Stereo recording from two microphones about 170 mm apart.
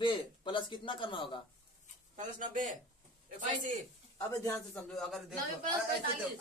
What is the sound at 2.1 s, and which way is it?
Speech, 50° right (ahead or behind).